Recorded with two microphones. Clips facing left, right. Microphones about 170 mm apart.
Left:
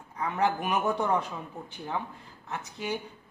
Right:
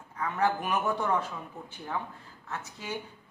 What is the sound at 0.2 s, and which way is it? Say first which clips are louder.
Speech: left 1 dB; 15° left (ahead or behind).